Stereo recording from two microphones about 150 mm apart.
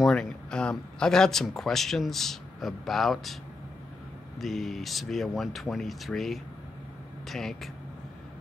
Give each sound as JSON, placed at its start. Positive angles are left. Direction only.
{"t": 0.0, "sound": "speech", "side_deg": 5}
{"t": 4.4, "sound": "speech", "side_deg": 0}